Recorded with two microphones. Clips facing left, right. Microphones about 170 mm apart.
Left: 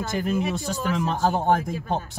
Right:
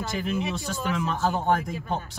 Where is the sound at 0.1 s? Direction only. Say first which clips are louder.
Left 4 dB; 45° left (ahead or behind).